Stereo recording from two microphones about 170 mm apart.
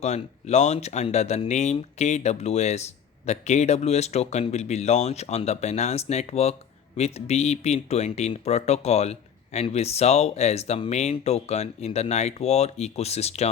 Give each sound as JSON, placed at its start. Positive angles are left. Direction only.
{"t": 0.0, "sound": "speech", "side_deg": 40}